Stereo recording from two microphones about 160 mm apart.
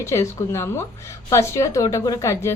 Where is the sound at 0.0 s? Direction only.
20° left (ahead or behind).